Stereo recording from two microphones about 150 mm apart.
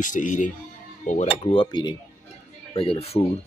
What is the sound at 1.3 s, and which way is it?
Cutlery, 35° left (ahead or behind).